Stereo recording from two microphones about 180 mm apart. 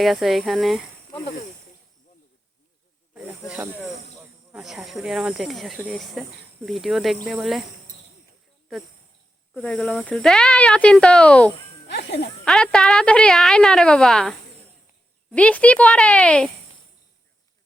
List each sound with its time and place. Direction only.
0.0 s speech: centre (ahead or behind)
1.1 s snake: 40° left (ahead or behind)
4.2 s speech: 5° right (ahead or behind)
9.6 s speech: 5° left (ahead or behind)
11.9 s music: 70° left (ahead or behind)
12.5 s speech: 5° left (ahead or behind)